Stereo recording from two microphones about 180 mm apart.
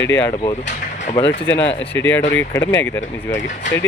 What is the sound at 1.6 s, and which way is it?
Speech, 10° left (ahead or behind).